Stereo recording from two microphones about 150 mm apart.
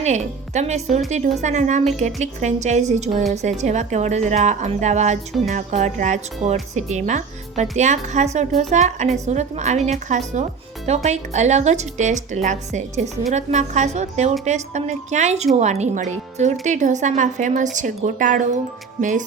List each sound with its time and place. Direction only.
0.0 s a woman's voice: 50° right (ahead or behind)